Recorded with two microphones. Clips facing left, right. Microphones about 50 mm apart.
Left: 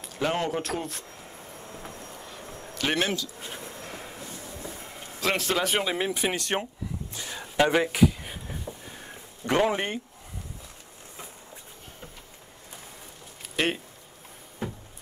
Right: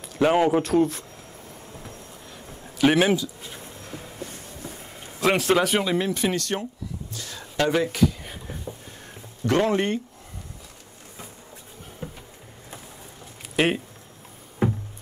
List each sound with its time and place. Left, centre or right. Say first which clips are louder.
0.2 s speech: right 8 dB; centre
0.6 s speech: right 10 dB; centre
2.2 s music: left 1 dB; centre
2.7 s speech: right 8 dB; centre
3.4 s bee: left 1 dB; left
4.2 s train: right 4 dB; right
5.2 s speech: right 6 dB; centre
6.4 s a sound: even; left; by 8.7 s centre
9.6 s speech: right 3 dB; centre
13.6 s speech: right 5 dB; centre